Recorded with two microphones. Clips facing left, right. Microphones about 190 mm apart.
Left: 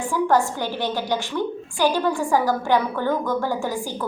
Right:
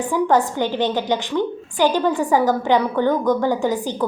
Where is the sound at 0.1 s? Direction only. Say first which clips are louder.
Right 2 dB; 20° right (ahead or behind).